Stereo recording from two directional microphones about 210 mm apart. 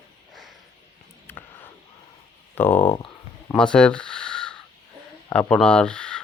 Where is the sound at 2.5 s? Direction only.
10° left (ahead or behind).